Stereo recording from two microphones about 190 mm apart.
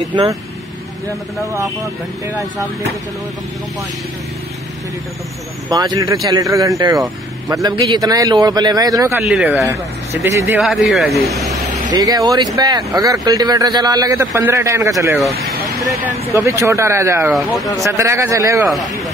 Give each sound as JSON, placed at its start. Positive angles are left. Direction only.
{"t": 0.1, "sound": "a man's voice", "side_deg": -20}
{"t": 1.4, "sound": "speech", "side_deg": -15}
{"t": 5.7, "sound": "a man's voice", "side_deg": -20}
{"t": 9.2, "sound": "speech", "side_deg": 0}
{"t": 10.3, "sound": "speech", "side_deg": -15}
{"t": 10.6, "sound": "speech", "side_deg": 0}
{"t": 11.9, "sound": "a man's voice", "side_deg": -20}
{"t": 16.3, "sound": "speech", "side_deg": -15}
{"t": 17.2, "sound": "speech", "side_deg": 0}
{"t": 17.8, "sound": "speech", "side_deg": -15}